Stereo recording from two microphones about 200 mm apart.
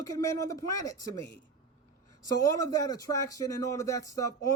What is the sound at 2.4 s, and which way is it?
Speech, 15° left (ahead or behind).